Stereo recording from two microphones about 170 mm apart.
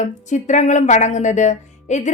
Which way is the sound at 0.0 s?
45° left (ahead or behind).